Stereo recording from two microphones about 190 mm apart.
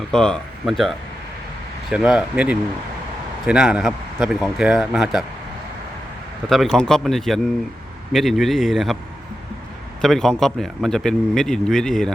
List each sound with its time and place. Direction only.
0.1 s speech: 5° left (ahead or behind)
6.5 s speech: centre (ahead or behind)
10.0 s speech: centre (ahead or behind)